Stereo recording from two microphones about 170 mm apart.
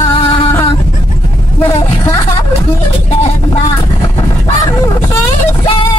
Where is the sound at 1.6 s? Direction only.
15° left (ahead or behind).